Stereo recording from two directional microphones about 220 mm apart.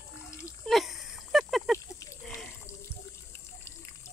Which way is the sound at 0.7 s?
Centre (ahead or behind).